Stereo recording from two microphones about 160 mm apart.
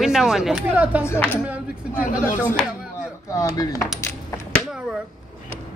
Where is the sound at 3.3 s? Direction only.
20° left (ahead or behind).